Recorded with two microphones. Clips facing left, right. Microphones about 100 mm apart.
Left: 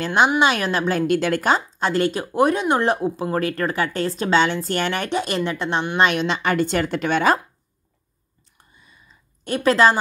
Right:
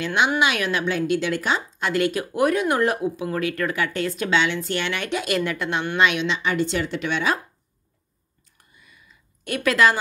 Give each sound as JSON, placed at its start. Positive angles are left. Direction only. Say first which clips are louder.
{"t": 0.0, "sound": "speech", "louder": "left 3 dB", "side_deg": 35}
{"t": 1.8, "sound": "speech", "louder": "left 2 dB", "side_deg": 30}
{"t": 5.9, "sound": "speech", "louder": "left 2 dB", "side_deg": 40}
{"t": 8.5, "sound": "a sound", "louder": "left 1 dB", "side_deg": 30}